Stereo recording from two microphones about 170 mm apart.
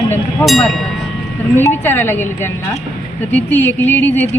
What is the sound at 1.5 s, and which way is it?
Speech, 15° left (ahead or behind).